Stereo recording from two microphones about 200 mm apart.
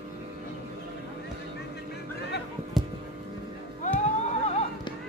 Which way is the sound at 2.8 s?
Centre (ahead or behind).